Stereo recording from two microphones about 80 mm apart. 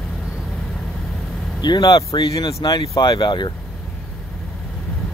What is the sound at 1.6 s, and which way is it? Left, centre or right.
Speech, left.